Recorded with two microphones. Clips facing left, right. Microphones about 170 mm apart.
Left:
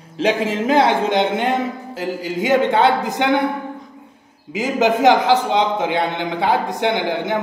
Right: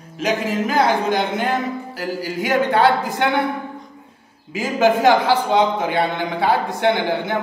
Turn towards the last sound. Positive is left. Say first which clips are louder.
# right 1 dB
turn(degrees=15)  # may be behind; listen again after turning